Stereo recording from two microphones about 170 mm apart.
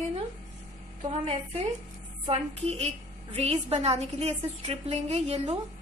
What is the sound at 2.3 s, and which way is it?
A woman's voice, 40° right (ahead or behind).